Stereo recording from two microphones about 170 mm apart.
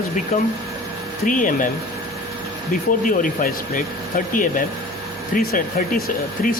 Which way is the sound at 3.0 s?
50° left (ahead or behind).